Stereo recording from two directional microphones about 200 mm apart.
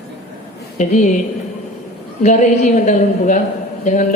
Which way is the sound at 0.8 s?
40° left (ahead or behind).